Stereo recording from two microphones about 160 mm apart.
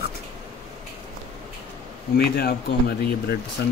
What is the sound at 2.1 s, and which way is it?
Speech, 85° left.